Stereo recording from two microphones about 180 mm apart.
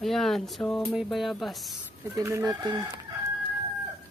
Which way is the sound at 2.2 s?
20° right (ahead or behind).